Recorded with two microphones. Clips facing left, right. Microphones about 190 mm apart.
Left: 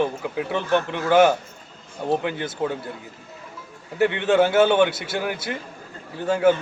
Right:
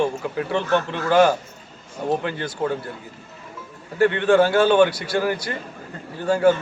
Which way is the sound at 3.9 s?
15° left (ahead or behind).